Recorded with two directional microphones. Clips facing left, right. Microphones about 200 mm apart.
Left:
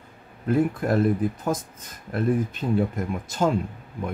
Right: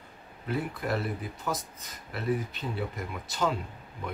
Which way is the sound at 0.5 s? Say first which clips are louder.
Left 9 dB; 50° left (ahead or behind).